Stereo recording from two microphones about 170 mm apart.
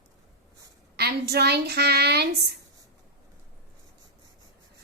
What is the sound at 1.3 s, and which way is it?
A woman's voice, 70° right (ahead or behind).